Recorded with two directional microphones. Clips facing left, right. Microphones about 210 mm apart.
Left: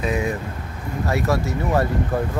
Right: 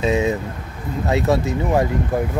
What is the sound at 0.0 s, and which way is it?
Speech, 25° right (ahead or behind).